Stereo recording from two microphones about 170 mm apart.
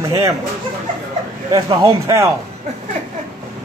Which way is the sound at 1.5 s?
20° right (ahead or behind).